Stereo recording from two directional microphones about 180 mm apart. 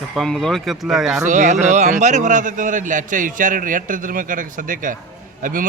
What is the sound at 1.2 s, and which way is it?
A man's voice, 40° right (ahead or behind).